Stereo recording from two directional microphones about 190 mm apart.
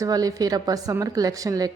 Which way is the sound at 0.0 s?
20° right (ahead or behind).